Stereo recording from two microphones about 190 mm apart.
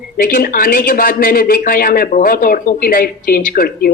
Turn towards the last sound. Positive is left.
turn(degrees=50)  # may be behind; listen again after turning